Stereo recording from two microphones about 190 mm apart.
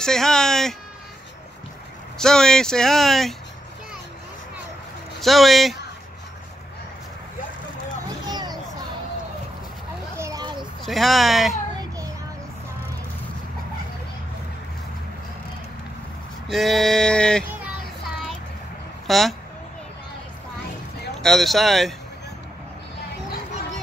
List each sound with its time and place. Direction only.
0.0 s speech: 5° left (ahead or behind)
2.1 s speech: 5° left (ahead or behind)
5.2 s speech: centre (ahead or behind)
8.3 s a sound: 20° right (ahead or behind)
10.1 s a sound: 15° right (ahead or behind)
10.9 s speech: centre (ahead or behind)
16.5 s speech: centre (ahead or behind)
19.0 s speech: centre (ahead or behind)
21.2 s speech: centre (ahead or behind)